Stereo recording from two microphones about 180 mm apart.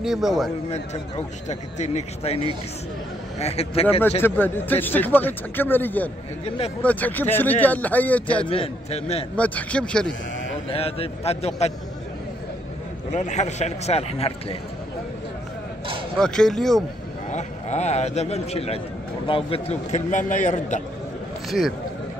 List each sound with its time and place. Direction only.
0.0 s a man's voice: centre (ahead or behind)
0.7 s speech: 40° left (ahead or behind)
4.2 s speech: 10° left (ahead or behind)
8.5 s speech: 35° left (ahead or behind)
9.4 s a man's voice: 5° left (ahead or behind)
10.7 s speech: 35° left (ahead or behind)
13.1 s speech: 40° left (ahead or behind)
16.2 s a man's voice: 5° left (ahead or behind)
17.3 s a man's voice: 40° left (ahead or behind)
21.5 s speech: centre (ahead or behind)